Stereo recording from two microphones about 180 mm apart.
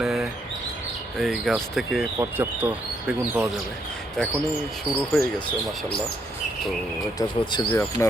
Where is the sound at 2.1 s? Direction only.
10° right (ahead or behind).